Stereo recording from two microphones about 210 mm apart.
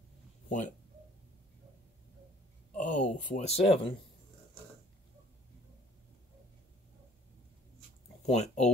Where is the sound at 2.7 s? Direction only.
35° left (ahead or behind).